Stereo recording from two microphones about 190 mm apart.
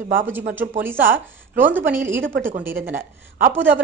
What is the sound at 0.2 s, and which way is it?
A woman's voice, 10° right (ahead or behind).